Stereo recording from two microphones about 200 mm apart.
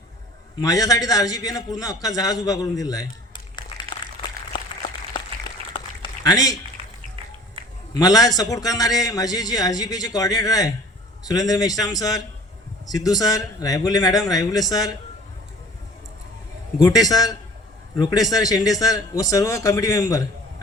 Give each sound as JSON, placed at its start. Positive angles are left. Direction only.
{"t": 0.6, "sound": "a man's voice", "side_deg": 15}
{"t": 3.5, "sound": "applause", "side_deg": 20}
{"t": 6.2, "sound": "a man's voice", "side_deg": 20}
{"t": 7.9, "sound": "a man's voice", "side_deg": 20}
{"t": 16.7, "sound": "a man's voice", "side_deg": 20}